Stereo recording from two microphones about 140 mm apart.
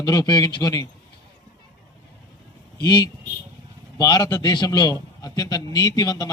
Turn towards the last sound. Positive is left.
turn(degrees=25)  # may be behind; listen again after turning